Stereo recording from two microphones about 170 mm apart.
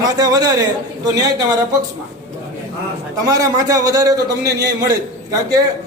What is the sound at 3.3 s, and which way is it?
A man's voice, 20° right (ahead or behind).